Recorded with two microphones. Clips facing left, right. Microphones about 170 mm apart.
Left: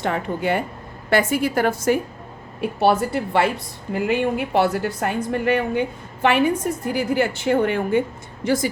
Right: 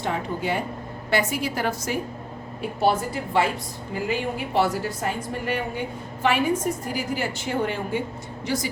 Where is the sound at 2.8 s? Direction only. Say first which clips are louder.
Left 4 dB; 65° left (ahead or behind).